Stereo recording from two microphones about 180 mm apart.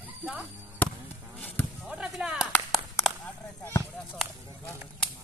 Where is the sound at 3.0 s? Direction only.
10° left (ahead or behind).